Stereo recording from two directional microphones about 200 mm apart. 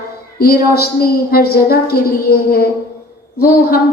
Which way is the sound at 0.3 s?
50° left (ahead or behind).